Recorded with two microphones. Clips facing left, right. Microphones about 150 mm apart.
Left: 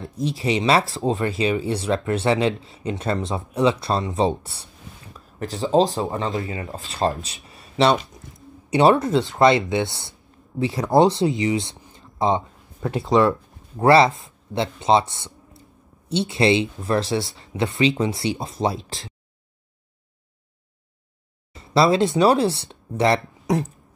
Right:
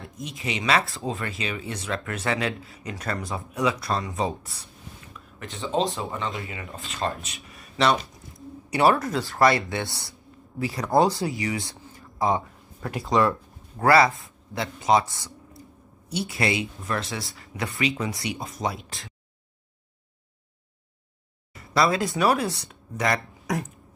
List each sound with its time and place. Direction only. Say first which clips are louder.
0.0 s speech: left 9 dB; 30° left (ahead or behind)
5.1 s a sound: left 10 dB; 40° left (ahead or behind)
5.9 s a man's voice: left 6 dB; 35° left (ahead or behind)
21.5 s speech: left 5 dB; 25° left (ahead or behind)